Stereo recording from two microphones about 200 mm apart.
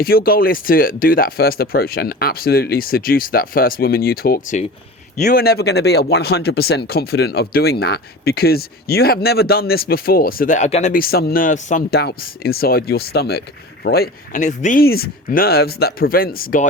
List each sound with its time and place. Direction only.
0.0 s speech: 45° left (ahead or behind)